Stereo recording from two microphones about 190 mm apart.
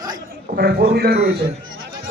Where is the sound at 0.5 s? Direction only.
55° right (ahead or behind).